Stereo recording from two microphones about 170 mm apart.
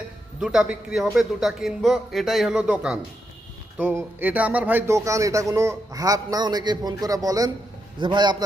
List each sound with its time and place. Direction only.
0.3 s a man's voice: 5° right (ahead or behind); by 8.4 s 25° right (ahead or behind)